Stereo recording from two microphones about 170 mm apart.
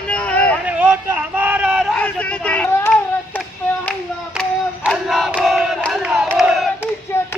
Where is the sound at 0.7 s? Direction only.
10° right (ahead or behind).